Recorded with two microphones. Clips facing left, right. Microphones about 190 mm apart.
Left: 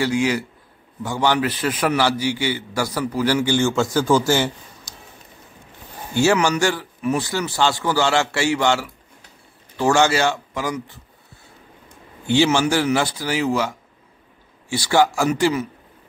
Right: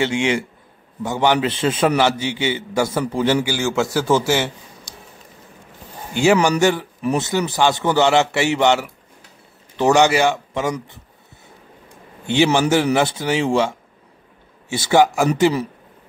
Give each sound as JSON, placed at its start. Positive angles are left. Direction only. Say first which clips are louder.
{"t": 0.0, "sound": "a man's voice", "louder": "right 1 dB", "side_deg": -25}
{"t": 3.4, "sound": "a man's voice", "louder": "left 2 dB", "side_deg": -5}
{"t": 6.1, "sound": "a man's voice", "louder": "right 2 dB", "side_deg": -15}
{"t": 12.5, "sound": "a man's voice", "louder": "right 3 dB", "side_deg": -20}